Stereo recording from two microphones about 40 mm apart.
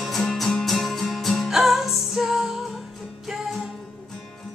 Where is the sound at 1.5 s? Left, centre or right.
Centre.